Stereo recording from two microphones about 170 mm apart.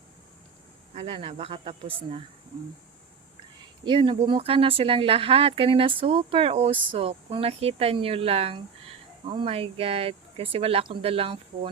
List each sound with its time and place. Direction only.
0.9 s speech: 35° right (ahead or behind)
3.8 s speech: 30° right (ahead or behind)